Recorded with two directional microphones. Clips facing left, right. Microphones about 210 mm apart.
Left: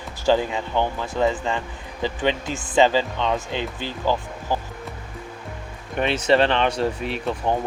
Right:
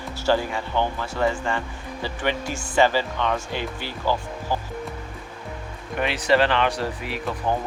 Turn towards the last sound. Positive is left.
turn(degrees=25)  # may be behind; listen again after turning